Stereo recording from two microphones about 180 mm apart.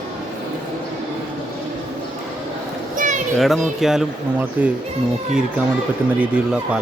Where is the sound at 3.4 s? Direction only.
Centre (ahead or behind).